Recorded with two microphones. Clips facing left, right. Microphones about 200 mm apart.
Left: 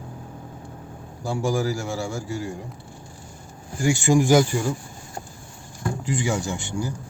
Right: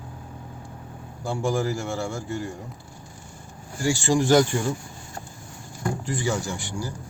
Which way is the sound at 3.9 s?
15° left (ahead or behind).